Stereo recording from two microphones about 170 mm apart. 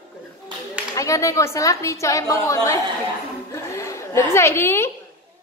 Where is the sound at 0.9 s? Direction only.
20° left (ahead or behind).